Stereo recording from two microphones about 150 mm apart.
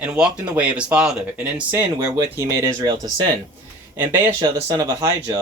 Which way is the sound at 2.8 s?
30° right (ahead or behind).